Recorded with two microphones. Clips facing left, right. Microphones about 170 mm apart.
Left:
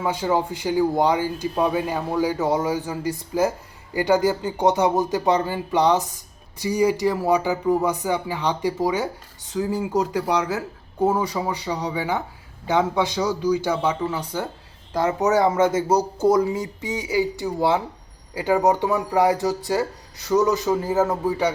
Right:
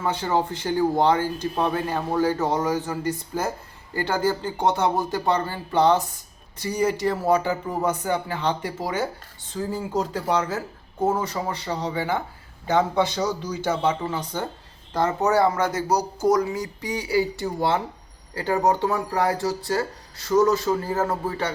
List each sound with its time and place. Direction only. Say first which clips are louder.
0.0 s a man's voice: left 1 dB; 10° left (ahead or behind)